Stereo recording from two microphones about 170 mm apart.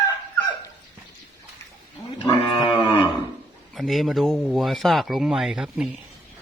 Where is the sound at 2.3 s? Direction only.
35° left (ahead or behind).